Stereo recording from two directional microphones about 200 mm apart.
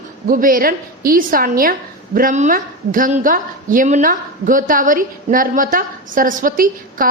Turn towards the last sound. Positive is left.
turn(degrees=-45)  # may be behind; listen again after turning